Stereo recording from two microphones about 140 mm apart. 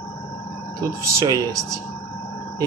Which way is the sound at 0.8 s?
25° right (ahead or behind).